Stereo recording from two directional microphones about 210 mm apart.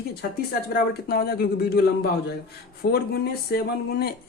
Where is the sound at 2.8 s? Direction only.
50° left (ahead or behind).